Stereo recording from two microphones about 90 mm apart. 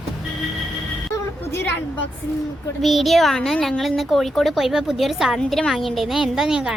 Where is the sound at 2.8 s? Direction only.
Centre (ahead or behind).